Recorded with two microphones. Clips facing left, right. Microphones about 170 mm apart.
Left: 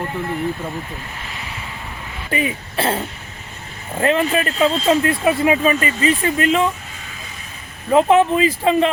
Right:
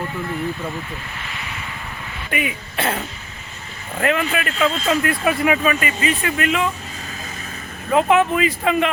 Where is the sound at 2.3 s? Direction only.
30° left (ahead or behind).